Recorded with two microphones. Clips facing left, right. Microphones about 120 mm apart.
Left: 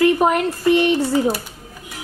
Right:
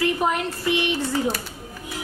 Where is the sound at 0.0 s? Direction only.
50° left (ahead or behind).